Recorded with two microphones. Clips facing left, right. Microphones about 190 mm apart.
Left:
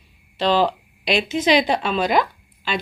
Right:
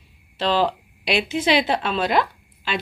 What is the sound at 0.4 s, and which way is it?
A woman's voice, 5° right (ahead or behind).